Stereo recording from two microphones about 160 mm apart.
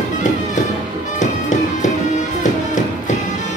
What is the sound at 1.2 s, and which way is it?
Music, 50° left (ahead or behind).